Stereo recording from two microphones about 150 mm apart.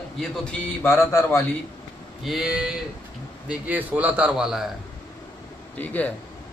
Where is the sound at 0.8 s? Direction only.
20° left (ahead or behind).